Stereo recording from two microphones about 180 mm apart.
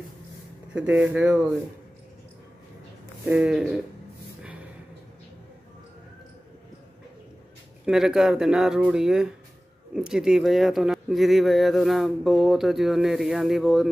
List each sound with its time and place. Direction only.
0.7 s speech: 10° right (ahead or behind)
3.3 s speech: 5° right (ahead or behind)
7.8 s speech: 5° right (ahead or behind)